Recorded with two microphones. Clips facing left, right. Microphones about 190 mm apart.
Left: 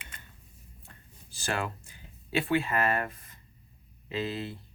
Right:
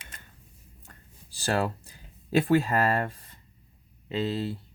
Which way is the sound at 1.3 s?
35° right (ahead or behind).